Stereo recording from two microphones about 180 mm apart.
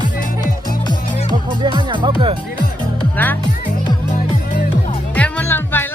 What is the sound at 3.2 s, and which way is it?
Music, 10° left (ahead or behind).